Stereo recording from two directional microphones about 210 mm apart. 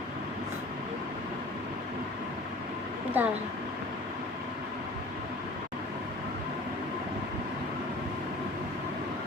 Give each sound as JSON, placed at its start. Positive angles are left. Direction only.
{"t": 3.2, "sound": "a woman's voice", "side_deg": -10}